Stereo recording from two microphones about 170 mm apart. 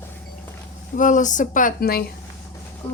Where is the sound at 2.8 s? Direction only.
35° left (ahead or behind).